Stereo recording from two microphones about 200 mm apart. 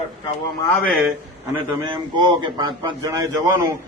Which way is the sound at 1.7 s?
20° right (ahead or behind).